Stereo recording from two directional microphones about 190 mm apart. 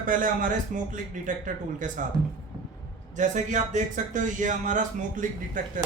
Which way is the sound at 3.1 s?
40° right (ahead or behind).